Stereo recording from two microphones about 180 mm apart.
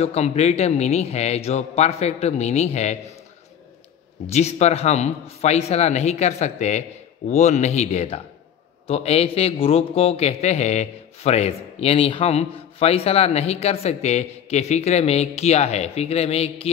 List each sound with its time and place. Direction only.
0.0 s a man's voice: 35° left (ahead or behind)
4.3 s a man's voice: 40° left (ahead or behind)